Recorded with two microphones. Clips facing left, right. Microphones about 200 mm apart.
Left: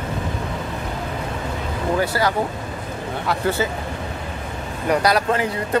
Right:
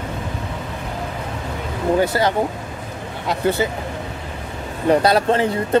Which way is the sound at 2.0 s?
20° right (ahead or behind).